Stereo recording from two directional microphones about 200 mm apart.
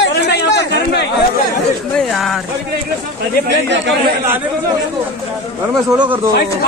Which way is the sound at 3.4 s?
60° right (ahead or behind).